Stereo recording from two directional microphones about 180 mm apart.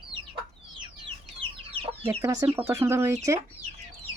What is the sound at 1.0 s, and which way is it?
Chicken, 30° right (ahead or behind).